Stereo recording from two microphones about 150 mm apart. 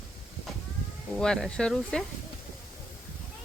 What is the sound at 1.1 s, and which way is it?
Speech, 5° left (ahead or behind).